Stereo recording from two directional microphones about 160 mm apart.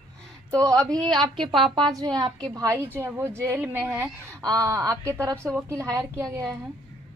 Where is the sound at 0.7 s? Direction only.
20° right (ahead or behind).